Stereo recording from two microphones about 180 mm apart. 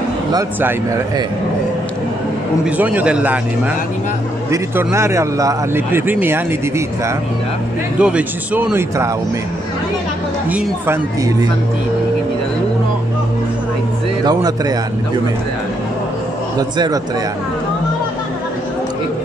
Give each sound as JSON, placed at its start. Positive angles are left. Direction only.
{"t": 0.3, "sound": "a man's voice", "side_deg": -15}
{"t": 2.6, "sound": "a man's voice", "side_deg": -10}
{"t": 4.5, "sound": "a man's voice", "side_deg": -15}
{"t": 8.0, "sound": "a man's voice", "side_deg": -5}
{"t": 10.5, "sound": "a man's voice", "side_deg": -15}
{"t": 14.2, "sound": "speech", "side_deg": -20}
{"t": 16.5, "sound": "speech", "side_deg": -20}